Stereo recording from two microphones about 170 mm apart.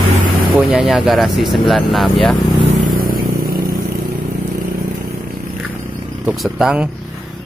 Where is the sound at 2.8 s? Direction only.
55° right (ahead or behind).